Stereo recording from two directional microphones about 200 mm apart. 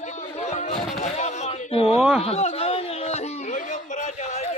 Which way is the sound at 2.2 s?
30° left (ahead or behind).